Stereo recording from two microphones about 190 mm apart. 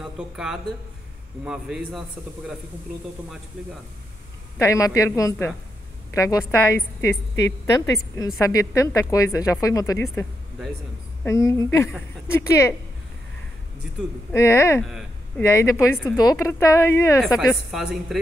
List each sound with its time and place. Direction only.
0.0 s a man's voice: 5° right (ahead or behind)
3.6 s a man's voice: 5° right (ahead or behind)
4.6 s a woman's voice: 15° left (ahead or behind)
11.2 s a woman's voice: 15° left (ahead or behind)
14.3 s a woman's voice: 15° left (ahead or behind)
14.8 s speech: centre (ahead or behind)
15.4 s a woman's voice: 15° left (ahead or behind)
17.6 s a man's voice: centre (ahead or behind)